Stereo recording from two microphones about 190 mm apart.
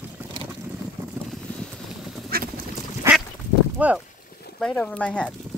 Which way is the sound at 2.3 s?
50° right (ahead or behind).